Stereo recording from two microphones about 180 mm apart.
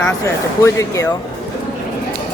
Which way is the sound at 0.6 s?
15° left (ahead or behind).